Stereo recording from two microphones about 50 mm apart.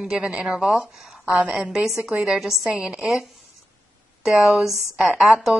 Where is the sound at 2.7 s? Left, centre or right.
Right.